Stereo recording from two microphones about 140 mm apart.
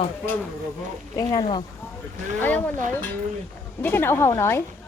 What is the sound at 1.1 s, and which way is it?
Speech, 30° left (ahead or behind).